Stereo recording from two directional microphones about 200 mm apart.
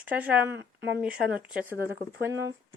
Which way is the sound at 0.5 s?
60° right (ahead or behind).